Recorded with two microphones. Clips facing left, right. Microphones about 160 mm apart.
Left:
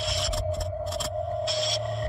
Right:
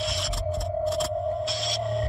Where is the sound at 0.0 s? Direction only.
Centre (ahead or behind).